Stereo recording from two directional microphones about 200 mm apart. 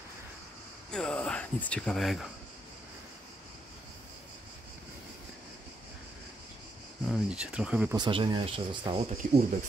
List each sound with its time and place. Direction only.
0.9 s speech: 5° left (ahead or behind)
7.1 s speech: 5° right (ahead or behind)
7.9 s speech: 20° right (ahead or behind)